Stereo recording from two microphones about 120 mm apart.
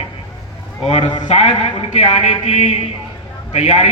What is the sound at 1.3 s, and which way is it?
A man's voice, 65° left (ahead or behind).